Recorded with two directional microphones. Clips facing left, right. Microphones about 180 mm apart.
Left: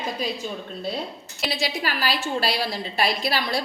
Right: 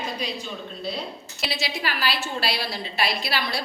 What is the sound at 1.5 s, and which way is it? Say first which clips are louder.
A woman's voice: left 2 dB; 45° left (ahead or behind).